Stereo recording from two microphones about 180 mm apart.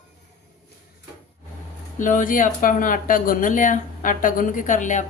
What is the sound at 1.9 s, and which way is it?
Speech, 45° left (ahead or behind).